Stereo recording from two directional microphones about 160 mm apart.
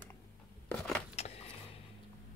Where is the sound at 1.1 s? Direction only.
40° left (ahead or behind).